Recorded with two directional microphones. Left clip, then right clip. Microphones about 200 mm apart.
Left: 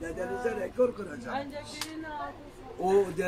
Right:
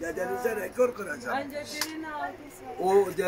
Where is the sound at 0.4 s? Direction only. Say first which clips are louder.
Right 2 dB; 60° right (ahead or behind).